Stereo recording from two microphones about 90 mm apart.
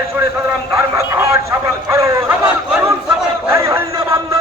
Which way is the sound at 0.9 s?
35° right (ahead or behind).